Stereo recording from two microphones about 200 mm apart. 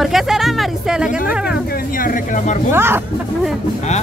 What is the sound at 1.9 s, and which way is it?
Speech, 45° left (ahead or behind).